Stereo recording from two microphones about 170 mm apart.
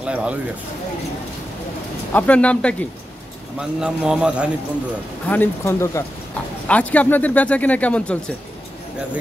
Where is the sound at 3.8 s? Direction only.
5° right (ahead or behind).